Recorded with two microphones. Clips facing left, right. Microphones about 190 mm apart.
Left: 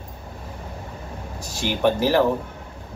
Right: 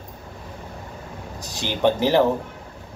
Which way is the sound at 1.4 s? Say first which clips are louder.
Even; 20° right (ahead or behind).